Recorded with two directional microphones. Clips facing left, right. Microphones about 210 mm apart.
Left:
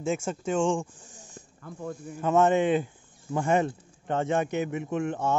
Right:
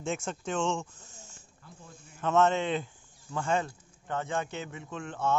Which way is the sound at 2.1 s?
10° left (ahead or behind).